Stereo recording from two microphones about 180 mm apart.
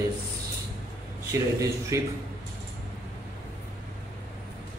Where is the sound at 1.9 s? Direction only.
15° right (ahead or behind).